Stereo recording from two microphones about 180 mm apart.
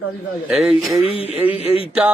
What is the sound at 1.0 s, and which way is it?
Speech, 35° left (ahead or behind).